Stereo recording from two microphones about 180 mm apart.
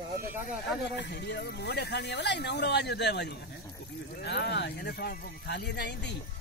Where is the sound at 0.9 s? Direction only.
70° left (ahead or behind).